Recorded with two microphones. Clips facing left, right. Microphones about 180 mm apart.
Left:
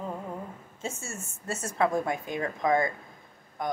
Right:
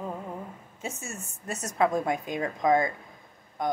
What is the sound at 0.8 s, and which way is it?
A woman's voice, 20° right (ahead or behind).